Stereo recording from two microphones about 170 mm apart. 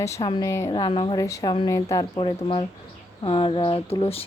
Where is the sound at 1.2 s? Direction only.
20° left (ahead or behind).